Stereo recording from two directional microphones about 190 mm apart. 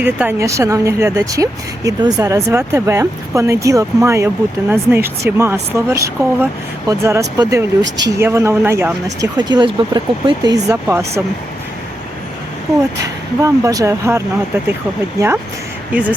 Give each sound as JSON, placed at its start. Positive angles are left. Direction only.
{"t": 0.0, "sound": "speech", "side_deg": -10}
{"t": 7.9, "sound": "speech", "side_deg": -70}
{"t": 8.2, "sound": "speech", "side_deg": -15}
{"t": 13.4, "sound": "speech", "side_deg": -15}
{"t": 15.9, "sound": "speech", "side_deg": -10}